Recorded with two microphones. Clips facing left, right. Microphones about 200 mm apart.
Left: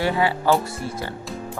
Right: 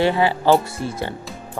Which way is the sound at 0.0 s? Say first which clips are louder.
Right 3 dB; 25° right (ahead or behind).